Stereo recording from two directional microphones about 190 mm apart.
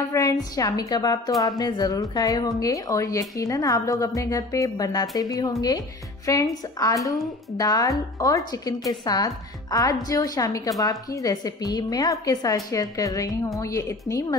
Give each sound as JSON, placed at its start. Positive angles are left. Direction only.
{"t": 0.1, "sound": "a woman's voice", "side_deg": 15}